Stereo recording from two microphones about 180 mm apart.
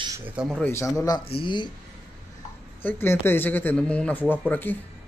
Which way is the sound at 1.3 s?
30° left (ahead or behind).